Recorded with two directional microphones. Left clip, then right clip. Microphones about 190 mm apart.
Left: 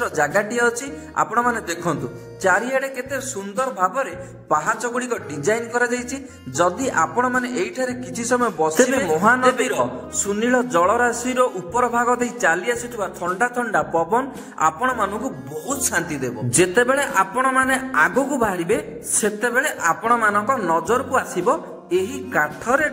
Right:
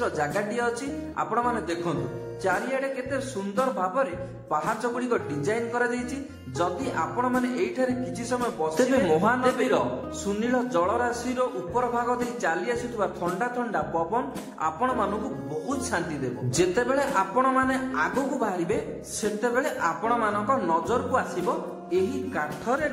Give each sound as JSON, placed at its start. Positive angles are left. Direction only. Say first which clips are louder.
{"t": 0.0, "sound": "music", "louder": "left 7 dB", "side_deg": 35}
{"t": 9.1, "sound": "a man's voice", "louder": "left 6 dB", "side_deg": 25}
{"t": 10.3, "sound": "music", "louder": "left 7 dB", "side_deg": 30}
{"t": 13.4, "sound": "a man's voice", "louder": "left 10 dB", "side_deg": 30}
{"t": 19.2, "sound": "music", "louder": "left 5 dB", "side_deg": 30}